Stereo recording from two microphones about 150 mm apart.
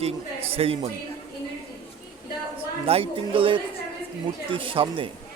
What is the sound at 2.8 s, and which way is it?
Speech, 40° right (ahead or behind).